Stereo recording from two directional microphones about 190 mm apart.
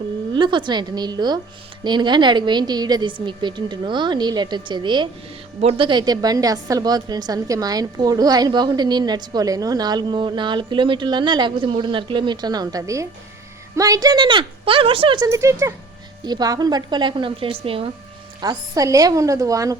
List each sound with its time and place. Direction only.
0.3 s a woman's voice: 25° right (ahead or behind)